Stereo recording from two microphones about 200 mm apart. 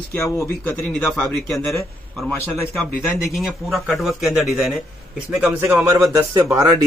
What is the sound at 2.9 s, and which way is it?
A man's voice, centre (ahead or behind).